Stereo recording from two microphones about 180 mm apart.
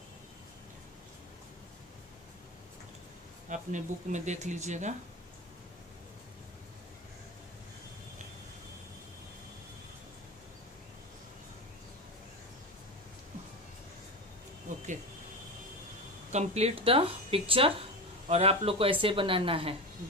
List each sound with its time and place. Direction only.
3.4 s speech: 45° right (ahead or behind)
16.3 s speech: 35° right (ahead or behind)